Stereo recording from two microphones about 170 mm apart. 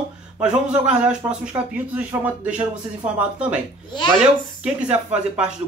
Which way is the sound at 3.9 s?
25° left (ahead or behind).